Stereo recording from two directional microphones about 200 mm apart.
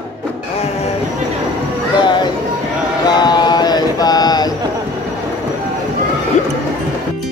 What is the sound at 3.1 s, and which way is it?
Mantra, 20° left (ahead or behind).